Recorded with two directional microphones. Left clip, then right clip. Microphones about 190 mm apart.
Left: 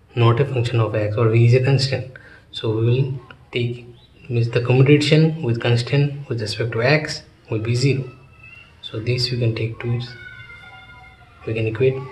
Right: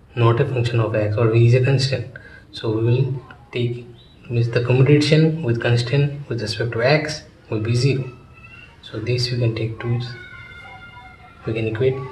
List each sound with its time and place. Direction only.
0.1 s speech: 25° left (ahead or behind)
9.0 s speech: 20° left (ahead or behind)
11.4 s speech: 25° left (ahead or behind)